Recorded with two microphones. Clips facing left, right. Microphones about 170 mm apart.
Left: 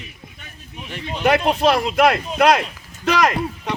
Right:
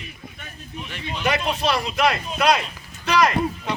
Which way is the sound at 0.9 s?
40° left (ahead or behind).